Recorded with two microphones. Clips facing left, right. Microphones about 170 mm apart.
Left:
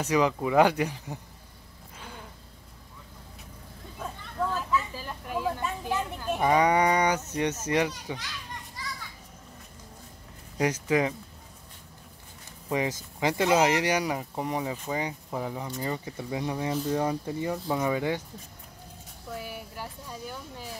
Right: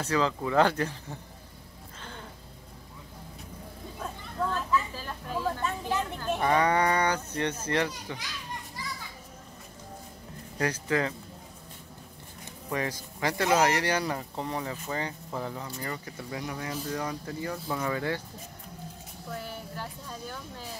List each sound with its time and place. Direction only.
0.0 s speech: 15° left (ahead or behind)
2.0 s vehicle: 10° left (ahead or behind)
4.4 s vehicle: 5° left (ahead or behind)
7.3 s speech: 15° left (ahead or behind)
10.6 s speech: 15° left (ahead or behind)
12.6 s speech: 20° left (ahead or behind)
19.3 s speech: 10° left (ahead or behind)